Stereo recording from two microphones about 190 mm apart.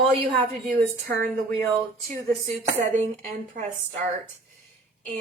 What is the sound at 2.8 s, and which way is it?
Speech, 40° right (ahead or behind).